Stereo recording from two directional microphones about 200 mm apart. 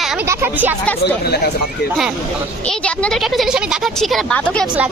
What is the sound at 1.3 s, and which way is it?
Speech, 55° left (ahead or behind).